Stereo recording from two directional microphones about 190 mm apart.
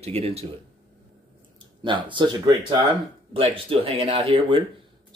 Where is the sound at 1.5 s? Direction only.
25° right (ahead or behind).